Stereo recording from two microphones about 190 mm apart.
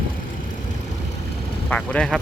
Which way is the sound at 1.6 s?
5° left (ahead or behind).